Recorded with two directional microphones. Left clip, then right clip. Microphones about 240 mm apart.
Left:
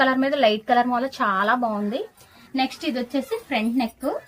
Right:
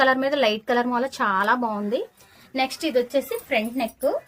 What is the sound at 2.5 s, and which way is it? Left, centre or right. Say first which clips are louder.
Speech: right 3 dB; right.